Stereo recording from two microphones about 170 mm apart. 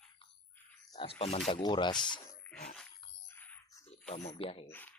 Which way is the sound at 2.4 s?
5° left (ahead or behind).